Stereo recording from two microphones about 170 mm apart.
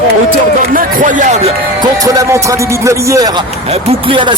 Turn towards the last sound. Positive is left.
turn(degrees=-30)  # may be behind; listen again after turning